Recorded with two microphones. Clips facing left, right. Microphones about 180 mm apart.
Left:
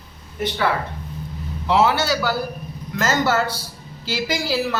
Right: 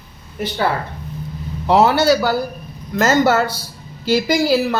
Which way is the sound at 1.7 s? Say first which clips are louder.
Right 5 dB; 45° right (ahead or behind).